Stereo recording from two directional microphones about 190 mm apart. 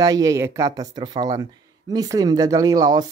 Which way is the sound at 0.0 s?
20° right (ahead or behind).